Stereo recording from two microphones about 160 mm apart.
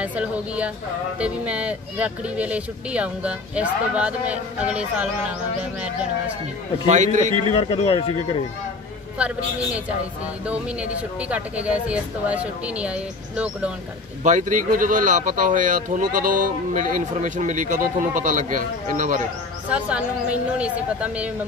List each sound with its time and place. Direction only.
0.0 s speech: 10° right (ahead or behind)
6.9 s speech: 50° right (ahead or behind)
7.6 s speech: 35° left (ahead or behind)
9.2 s speech: 5° right (ahead or behind)
10.4 s speech: 10° right (ahead or behind)
14.2 s speech: 50° right (ahead or behind)
19.7 s speech: 5° right (ahead or behind)